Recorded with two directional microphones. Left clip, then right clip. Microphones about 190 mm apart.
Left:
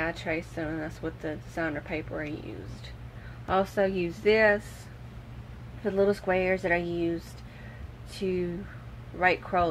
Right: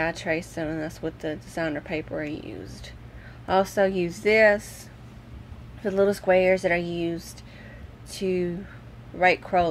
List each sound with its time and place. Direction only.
0.0 s speech: 45° right (ahead or behind)
5.9 s speech: 45° right (ahead or behind)
8.2 s speech: 40° right (ahead or behind)